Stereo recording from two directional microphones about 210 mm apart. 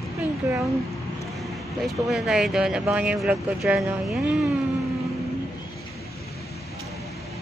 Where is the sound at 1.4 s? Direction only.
Centre (ahead or behind).